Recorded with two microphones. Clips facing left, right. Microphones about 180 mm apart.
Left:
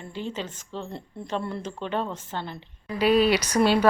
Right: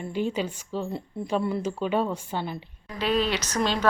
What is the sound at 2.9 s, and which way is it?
Speech, 10° left (ahead or behind).